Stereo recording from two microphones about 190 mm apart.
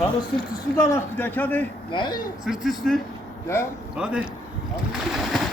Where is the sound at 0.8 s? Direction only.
15° left (ahead or behind).